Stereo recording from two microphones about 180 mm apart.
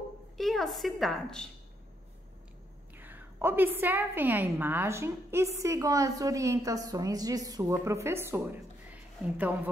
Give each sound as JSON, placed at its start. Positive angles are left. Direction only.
{"t": 0.4, "sound": "a woman's voice", "side_deg": 0}
{"t": 3.0, "sound": "a woman's voice", "side_deg": -10}